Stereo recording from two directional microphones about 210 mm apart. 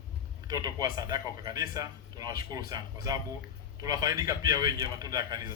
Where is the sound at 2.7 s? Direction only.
15° right (ahead or behind).